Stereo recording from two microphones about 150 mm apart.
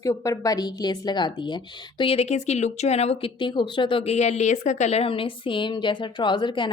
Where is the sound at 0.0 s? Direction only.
20° left (ahead or behind).